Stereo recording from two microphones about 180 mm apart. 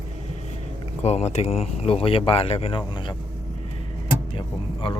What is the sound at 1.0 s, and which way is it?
Speech, 35° left (ahead or behind).